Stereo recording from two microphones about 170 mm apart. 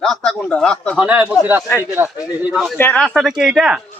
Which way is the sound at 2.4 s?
Centre (ahead or behind).